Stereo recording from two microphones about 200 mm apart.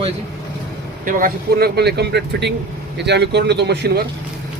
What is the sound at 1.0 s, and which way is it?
Speech, 45° right (ahead or behind).